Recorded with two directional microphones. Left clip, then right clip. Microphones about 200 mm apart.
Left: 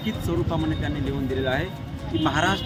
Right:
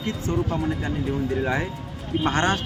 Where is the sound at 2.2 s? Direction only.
15° left (ahead or behind).